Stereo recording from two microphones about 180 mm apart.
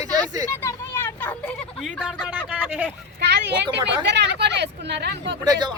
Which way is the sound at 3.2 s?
70° right (ahead or behind).